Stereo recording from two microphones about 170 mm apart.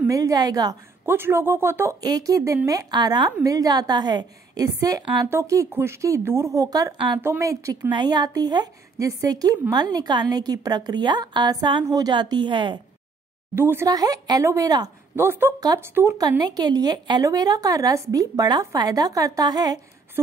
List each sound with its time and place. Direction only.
0.0 s a woman's voice: 20° right (ahead or behind)
7.2 s speech: 15° right (ahead or behind)
13.6 s speech: 15° right (ahead or behind)